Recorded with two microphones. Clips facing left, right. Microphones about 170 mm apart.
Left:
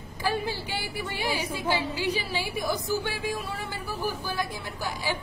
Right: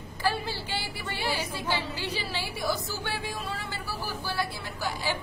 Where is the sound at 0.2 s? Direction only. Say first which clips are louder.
Left 1 dB; 15° left (ahead or behind).